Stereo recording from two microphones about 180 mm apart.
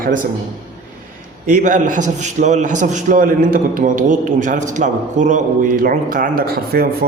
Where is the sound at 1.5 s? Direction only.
45° right (ahead or behind).